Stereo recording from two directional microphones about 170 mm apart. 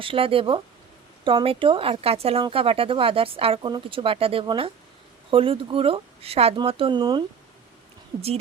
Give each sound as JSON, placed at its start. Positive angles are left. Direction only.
{"t": 0.0, "sound": "speech", "side_deg": -30}